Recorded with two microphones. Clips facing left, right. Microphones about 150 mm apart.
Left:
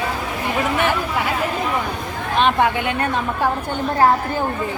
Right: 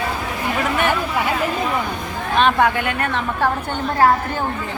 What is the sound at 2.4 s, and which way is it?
A woman's voice, 20° left (ahead or behind).